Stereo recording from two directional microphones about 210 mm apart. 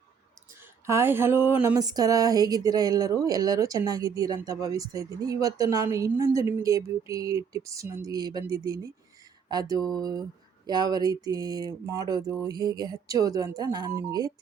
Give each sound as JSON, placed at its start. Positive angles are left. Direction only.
{"t": 0.9, "sound": "speech", "side_deg": -10}